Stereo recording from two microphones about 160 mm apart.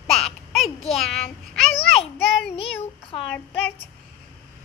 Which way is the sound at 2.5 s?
40° left (ahead or behind).